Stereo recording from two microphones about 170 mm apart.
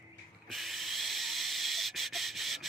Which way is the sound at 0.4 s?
Centre (ahead or behind).